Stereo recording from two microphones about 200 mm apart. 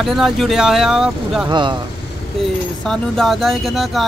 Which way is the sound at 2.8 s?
Centre (ahead or behind).